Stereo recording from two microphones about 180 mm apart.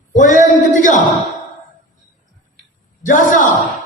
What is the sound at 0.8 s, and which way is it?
Speech, 45° left (ahead or behind).